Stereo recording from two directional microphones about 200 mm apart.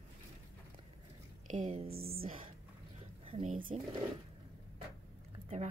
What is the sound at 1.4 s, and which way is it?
Speech, 35° right (ahead or behind).